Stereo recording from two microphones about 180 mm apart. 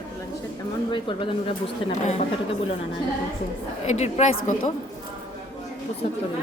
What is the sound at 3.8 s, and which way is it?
Speech, 40° left (ahead or behind).